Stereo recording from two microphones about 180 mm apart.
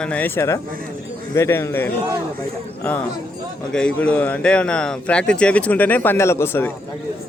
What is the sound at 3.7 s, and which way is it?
A man's voice, 5° left (ahead or behind).